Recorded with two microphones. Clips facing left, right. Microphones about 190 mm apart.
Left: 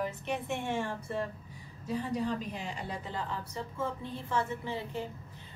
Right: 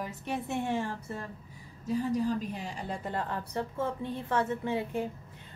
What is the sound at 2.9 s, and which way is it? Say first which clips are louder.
A woman's voice: right 6 dB; 55° right (ahead or behind).